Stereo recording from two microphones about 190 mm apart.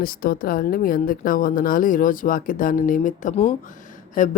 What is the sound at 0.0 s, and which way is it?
A woman's voice, 50° left (ahead or behind).